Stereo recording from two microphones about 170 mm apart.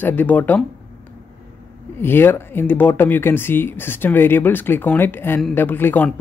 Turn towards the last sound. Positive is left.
turn(degrees=10)  # may be behind; listen again after turning